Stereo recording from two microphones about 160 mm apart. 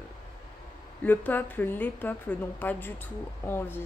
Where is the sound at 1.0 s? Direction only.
10° left (ahead or behind).